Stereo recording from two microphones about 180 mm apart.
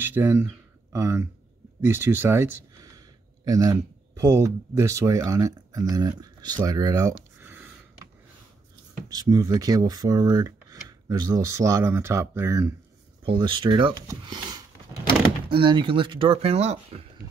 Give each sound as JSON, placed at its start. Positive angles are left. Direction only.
{"t": 0.0, "sound": "speech", "side_deg": -15}
{"t": 7.3, "sound": "a sound", "side_deg": -10}
{"t": 9.1, "sound": "speech", "side_deg": -20}
{"t": 13.2, "sound": "speech", "side_deg": -25}